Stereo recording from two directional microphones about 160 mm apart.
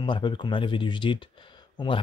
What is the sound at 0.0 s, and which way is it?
Speech, 30° left (ahead or behind).